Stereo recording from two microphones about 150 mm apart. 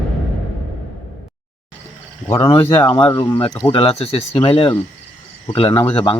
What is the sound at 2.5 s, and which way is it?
Speech, 40° left (ahead or behind).